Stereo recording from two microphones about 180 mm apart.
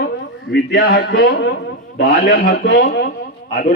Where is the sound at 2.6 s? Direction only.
70° left (ahead or behind).